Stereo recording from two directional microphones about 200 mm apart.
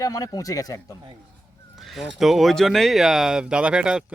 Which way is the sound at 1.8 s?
Centre (ahead or behind).